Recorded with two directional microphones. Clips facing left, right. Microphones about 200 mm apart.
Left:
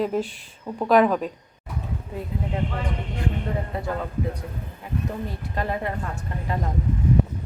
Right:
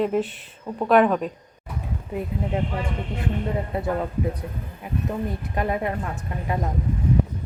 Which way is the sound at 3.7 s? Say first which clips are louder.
Right 3 dB; 20° right (ahead or behind).